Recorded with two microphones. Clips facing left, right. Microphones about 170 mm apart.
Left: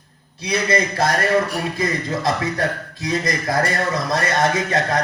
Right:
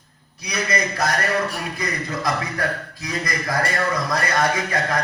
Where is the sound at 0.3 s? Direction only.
25° left (ahead or behind).